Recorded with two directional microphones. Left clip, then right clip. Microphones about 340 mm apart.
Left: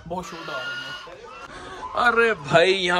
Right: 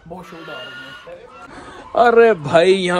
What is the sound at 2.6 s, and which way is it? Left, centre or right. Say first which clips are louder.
Speech: right 3 dB; centre.